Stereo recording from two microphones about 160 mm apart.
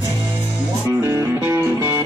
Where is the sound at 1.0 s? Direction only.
20° right (ahead or behind).